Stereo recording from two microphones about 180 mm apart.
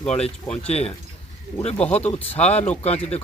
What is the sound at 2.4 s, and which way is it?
Speech, 35° left (ahead or behind).